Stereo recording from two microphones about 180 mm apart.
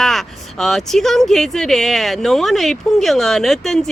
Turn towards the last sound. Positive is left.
turn(degrees=0)  # may be behind; listen again after turning